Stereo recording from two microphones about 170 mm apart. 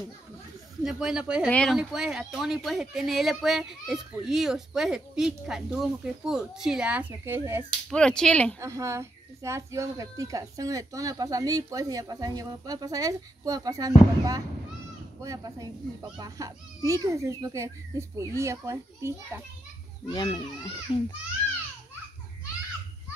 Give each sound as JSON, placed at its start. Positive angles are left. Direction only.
{"t": 0.8, "sound": "speech", "side_deg": -5}
{"t": 7.9, "sound": "speech", "side_deg": 5}
{"t": 8.5, "sound": "speech", "side_deg": -15}
{"t": 20.1, "sound": "a child's voice", "side_deg": 25}